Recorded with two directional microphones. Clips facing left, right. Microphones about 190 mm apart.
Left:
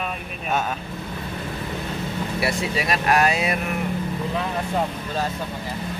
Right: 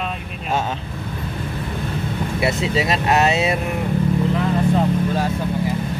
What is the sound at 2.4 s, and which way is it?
Speech, 25° right (ahead or behind).